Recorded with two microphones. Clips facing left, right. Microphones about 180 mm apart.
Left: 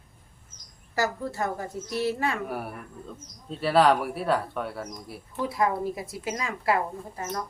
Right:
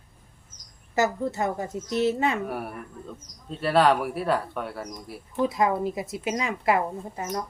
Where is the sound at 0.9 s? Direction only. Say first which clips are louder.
Right 3 dB; 20° right (ahead or behind).